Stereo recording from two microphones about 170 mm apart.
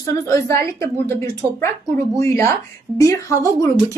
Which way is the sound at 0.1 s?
20° left (ahead or behind).